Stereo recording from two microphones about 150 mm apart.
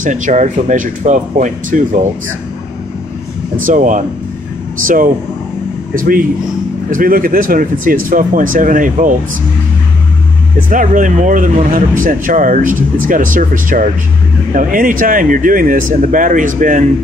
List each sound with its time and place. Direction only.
0.0 s speech: 55° right (ahead or behind)
3.5 s speech: 60° right (ahead or behind)
10.7 s speech: 60° right (ahead or behind)